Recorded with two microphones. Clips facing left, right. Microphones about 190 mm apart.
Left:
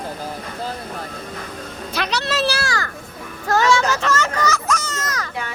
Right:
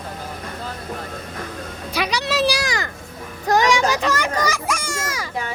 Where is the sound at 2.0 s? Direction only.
15° right (ahead or behind).